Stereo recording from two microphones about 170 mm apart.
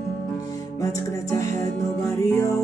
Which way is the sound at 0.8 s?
20° left (ahead or behind).